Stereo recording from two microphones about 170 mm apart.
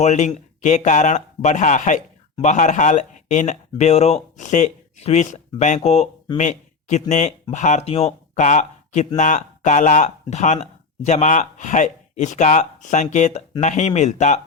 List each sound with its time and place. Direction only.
0.0 s speech: 45° left (ahead or behind)